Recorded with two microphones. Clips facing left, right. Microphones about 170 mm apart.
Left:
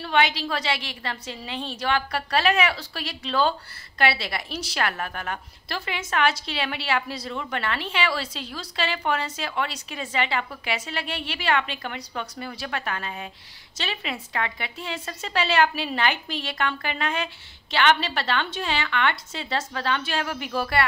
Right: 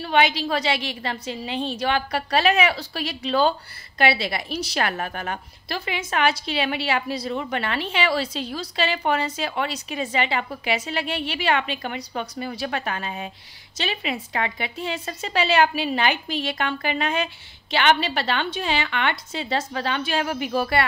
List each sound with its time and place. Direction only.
0.0 s a woman's voice: 15° right (ahead or behind)